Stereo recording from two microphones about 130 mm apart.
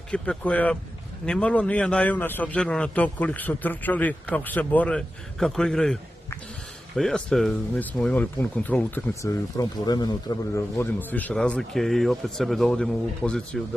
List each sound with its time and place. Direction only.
0.1 s a man's voice: 10° left (ahead or behind)
7.0 s a man's voice: 5° left (ahead or behind)
9.2 s speech: 30° left (ahead or behind)
10.8 s speech: 15° left (ahead or behind)